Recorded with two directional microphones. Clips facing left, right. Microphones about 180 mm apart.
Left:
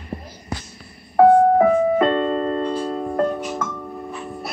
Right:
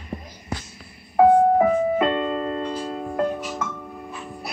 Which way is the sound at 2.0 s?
40° left (ahead or behind).